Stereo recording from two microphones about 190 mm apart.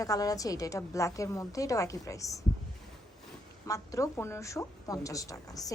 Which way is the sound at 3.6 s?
15° left (ahead or behind).